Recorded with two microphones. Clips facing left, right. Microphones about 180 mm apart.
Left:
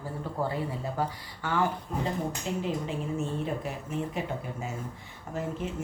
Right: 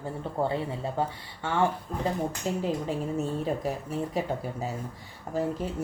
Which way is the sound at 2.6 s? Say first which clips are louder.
Right 2 dB; 40° right (ahead or behind).